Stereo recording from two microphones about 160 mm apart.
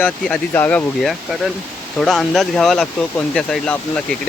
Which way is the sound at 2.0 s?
5° left (ahead or behind).